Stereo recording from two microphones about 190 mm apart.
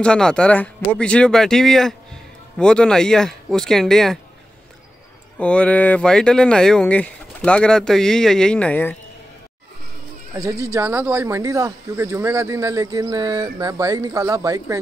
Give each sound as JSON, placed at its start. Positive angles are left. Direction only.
{"t": 0.0, "sound": "speech", "side_deg": 5}
{"t": 5.4, "sound": "speech", "side_deg": 5}
{"t": 10.3, "sound": "speech", "side_deg": -15}